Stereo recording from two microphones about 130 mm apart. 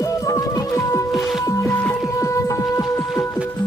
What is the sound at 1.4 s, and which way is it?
Music, 25° left (ahead or behind).